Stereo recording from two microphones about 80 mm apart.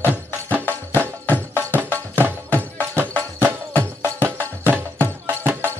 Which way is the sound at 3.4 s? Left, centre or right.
Right.